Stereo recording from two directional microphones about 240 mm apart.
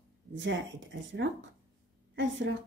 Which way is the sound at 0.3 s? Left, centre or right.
Right.